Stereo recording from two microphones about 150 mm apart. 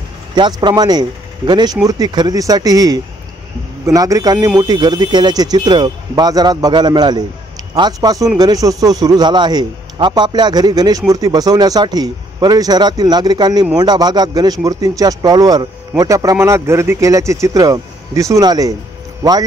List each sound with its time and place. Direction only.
0.4 s a man's voice: 30° right (ahead or behind)